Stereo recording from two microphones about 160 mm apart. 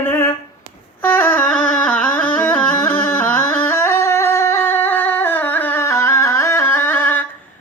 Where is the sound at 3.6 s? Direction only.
15° left (ahead or behind).